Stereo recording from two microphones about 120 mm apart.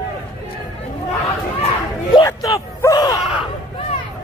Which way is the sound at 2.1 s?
30° left (ahead or behind).